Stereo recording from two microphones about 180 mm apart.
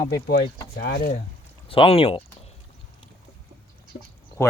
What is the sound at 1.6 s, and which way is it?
Speech, 30° left (ahead or behind).